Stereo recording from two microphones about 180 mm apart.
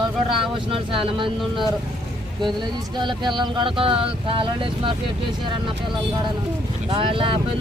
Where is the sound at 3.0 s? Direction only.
25° right (ahead or behind).